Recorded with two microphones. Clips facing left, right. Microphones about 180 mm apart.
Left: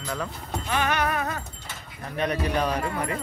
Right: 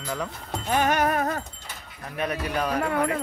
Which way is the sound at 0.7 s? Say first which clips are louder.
Right 3 dB; 45° right (ahead or behind).